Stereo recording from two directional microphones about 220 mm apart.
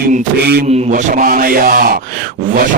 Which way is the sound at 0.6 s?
30° right (ahead or behind).